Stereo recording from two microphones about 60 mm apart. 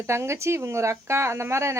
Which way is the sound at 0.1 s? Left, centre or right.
Right.